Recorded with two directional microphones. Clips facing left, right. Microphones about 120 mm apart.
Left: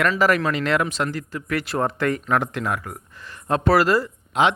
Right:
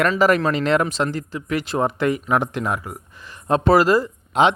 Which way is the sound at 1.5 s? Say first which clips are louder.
Right 2 dB; 20° right (ahead or behind).